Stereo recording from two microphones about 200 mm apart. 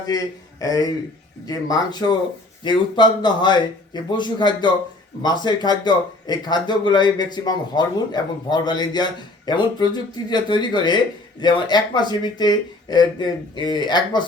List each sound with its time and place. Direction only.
0.6 s a man's voice: 20° left (ahead or behind)